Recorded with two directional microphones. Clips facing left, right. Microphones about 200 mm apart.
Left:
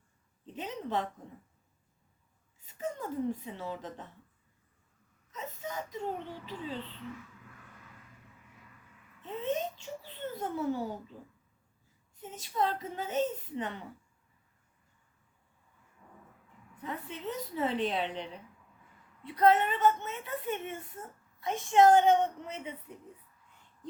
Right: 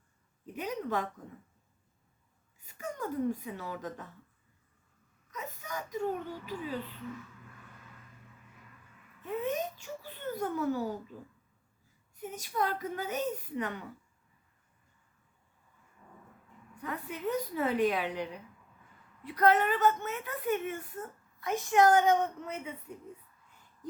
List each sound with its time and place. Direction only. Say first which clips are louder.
0.5 s a woman's voice: right 1 dB; 25° left (ahead or behind)
2.6 s a woman's voice: left 1 dB; 25° left (ahead or behind)
5.3 s speech: left 1 dB; 25° left (ahead or behind)
9.2 s speech: even; 25° left (ahead or behind)
12.1 s a woman's voice: even; 25° left (ahead or behind)
16.8 s a woman's voice: right 3 dB; 25° left (ahead or behind)